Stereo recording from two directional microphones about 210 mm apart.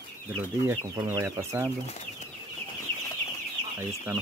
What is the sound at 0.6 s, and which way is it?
Speech, 15° right (ahead or behind).